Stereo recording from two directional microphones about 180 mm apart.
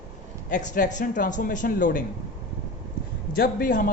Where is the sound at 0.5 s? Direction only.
45° left (ahead or behind).